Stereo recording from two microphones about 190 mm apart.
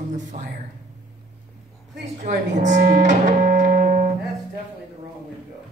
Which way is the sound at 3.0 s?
45° right (ahead or behind).